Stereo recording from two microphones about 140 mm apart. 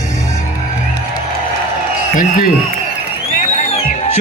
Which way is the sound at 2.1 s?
75° left (ahead or behind).